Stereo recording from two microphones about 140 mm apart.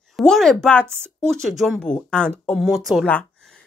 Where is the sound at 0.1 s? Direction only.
Centre (ahead or behind).